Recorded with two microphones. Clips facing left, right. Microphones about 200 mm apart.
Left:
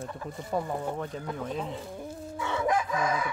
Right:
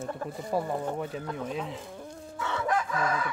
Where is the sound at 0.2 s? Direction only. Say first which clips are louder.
Right 3 dB; 50° right (ahead or behind).